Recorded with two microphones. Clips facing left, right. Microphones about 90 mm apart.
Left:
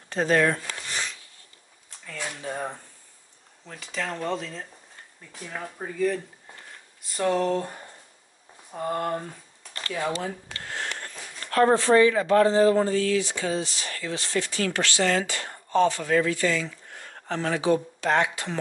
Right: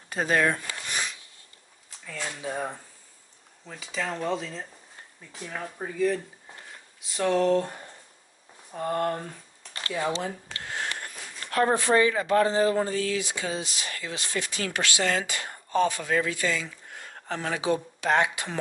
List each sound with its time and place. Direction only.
0.1 s a sound: 10° right (ahead or behind)
2.1 s speech: centre (ahead or behind)
10.5 s sniff: 15° right (ahead or behind)
11.7 s speech: 15° right (ahead or behind)